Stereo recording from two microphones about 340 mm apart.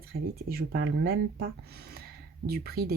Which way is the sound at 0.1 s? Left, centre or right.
Right.